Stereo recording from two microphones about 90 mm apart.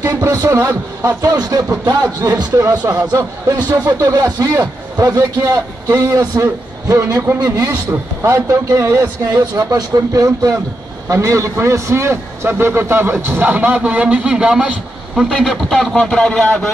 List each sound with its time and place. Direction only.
0.0 s speech: 35° right (ahead or behind)
9.3 s a man's voice: 45° right (ahead or behind); by 16.6 s 5° left (ahead or behind)